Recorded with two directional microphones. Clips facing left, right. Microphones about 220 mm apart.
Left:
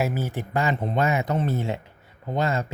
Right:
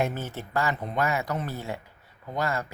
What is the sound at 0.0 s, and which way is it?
Speech, 10° left (ahead or behind).